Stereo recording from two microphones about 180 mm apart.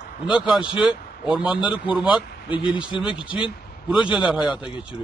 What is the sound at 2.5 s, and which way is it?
Speech, 30° left (ahead or behind).